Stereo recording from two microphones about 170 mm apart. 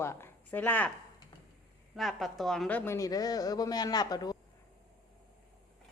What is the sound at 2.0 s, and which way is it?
A woman's voice, centre (ahead or behind).